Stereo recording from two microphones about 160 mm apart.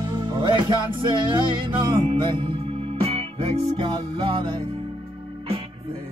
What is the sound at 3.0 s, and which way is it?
Music, 35° right (ahead or behind).